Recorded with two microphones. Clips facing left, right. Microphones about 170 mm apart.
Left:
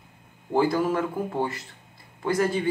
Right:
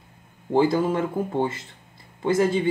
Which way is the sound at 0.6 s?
25° right (ahead or behind).